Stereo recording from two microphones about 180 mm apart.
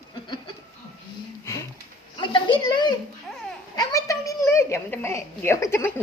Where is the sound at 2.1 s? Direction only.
25° left (ahead or behind).